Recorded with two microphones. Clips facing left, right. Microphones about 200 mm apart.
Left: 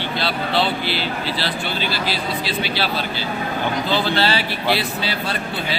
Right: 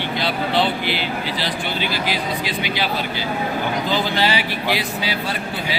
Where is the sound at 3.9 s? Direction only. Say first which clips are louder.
Left 1 dB; 15° right (ahead or behind).